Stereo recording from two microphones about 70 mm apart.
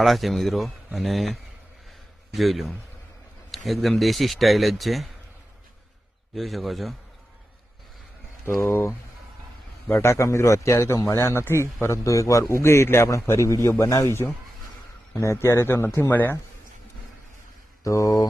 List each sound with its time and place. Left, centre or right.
0.0 s speech: centre
6.3 s speech: centre
8.6 s speech: left
10.0 s a man's voice: left
17.8 s a man's voice: left